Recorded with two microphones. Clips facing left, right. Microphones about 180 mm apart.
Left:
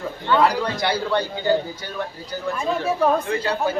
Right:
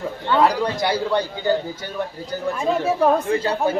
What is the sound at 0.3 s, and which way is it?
Speech, 20° right (ahead or behind).